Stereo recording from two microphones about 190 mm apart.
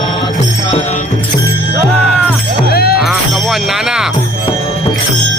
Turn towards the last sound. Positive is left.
turn(degrees=-5)  # may be behind; listen again after turning